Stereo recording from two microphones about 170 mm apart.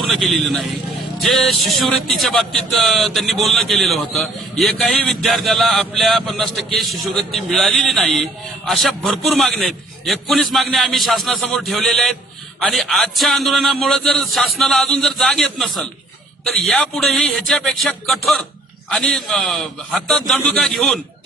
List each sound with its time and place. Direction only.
0.1 s speech: centre (ahead or behind)